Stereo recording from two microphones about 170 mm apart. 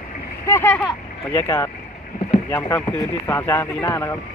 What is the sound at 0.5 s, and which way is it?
Speech, 15° left (ahead or behind).